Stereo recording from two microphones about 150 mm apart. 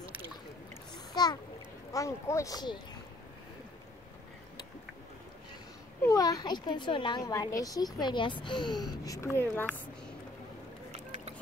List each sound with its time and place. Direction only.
0.9 s splash: 30° left (ahead or behind)
1.9 s a woman's voice: 20° left (ahead or behind)
6.0 s a woman's voice: 25° left (ahead or behind)